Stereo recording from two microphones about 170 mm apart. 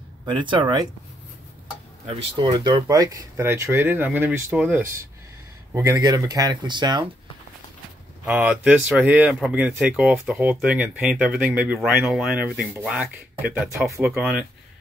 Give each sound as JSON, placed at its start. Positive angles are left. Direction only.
{"t": 0.2, "sound": "speech", "side_deg": -30}
{"t": 2.3, "sound": "speech", "side_deg": -25}
{"t": 8.3, "sound": "speech", "side_deg": -10}